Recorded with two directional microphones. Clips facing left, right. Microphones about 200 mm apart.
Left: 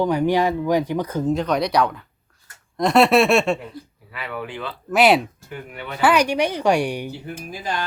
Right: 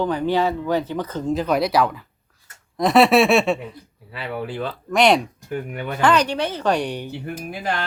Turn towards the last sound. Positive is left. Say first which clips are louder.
# right 1 dB
turn(degrees=-60)  # may be behind; listen again after turning